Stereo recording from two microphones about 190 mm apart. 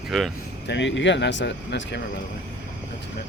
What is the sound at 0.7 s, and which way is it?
Speech, 70° left (ahead or behind).